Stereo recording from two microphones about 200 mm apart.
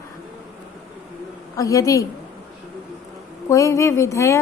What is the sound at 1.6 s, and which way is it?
Speech, 15° left (ahead or behind).